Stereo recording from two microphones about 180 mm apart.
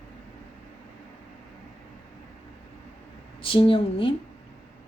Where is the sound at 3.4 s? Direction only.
30° left (ahead or behind).